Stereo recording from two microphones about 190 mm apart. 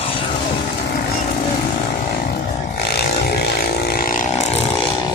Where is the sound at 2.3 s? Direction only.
55° left (ahead or behind); by 4.6 s 40° left (ahead or behind).